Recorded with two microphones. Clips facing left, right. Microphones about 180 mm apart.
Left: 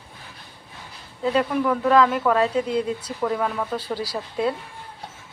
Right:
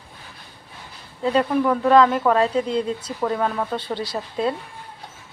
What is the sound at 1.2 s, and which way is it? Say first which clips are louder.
Speech: right 2 dB; centre (ahead or behind).